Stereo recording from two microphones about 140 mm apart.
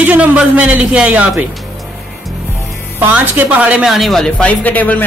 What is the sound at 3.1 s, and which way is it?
Speech, 10° right (ahead or behind).